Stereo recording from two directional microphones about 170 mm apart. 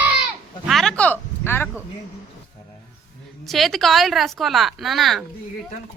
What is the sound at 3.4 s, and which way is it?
Speech, centre (ahead or behind).